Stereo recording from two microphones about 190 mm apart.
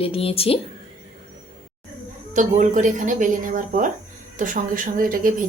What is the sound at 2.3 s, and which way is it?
Speech, 40° right (ahead or behind).